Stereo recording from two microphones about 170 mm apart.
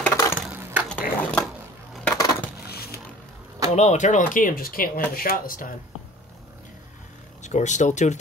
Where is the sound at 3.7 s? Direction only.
45° left (ahead or behind).